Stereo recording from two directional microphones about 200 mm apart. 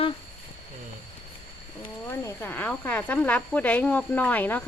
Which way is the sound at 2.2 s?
10° left (ahead or behind).